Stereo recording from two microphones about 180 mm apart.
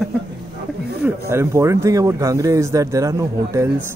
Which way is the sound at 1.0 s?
15° right (ahead or behind).